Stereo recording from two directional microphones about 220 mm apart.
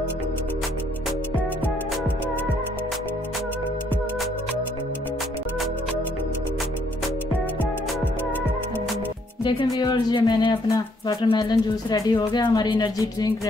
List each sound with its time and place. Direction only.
9.4 s speech: 20° left (ahead or behind)